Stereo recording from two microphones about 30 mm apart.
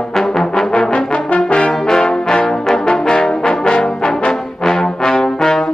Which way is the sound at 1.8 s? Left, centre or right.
Left.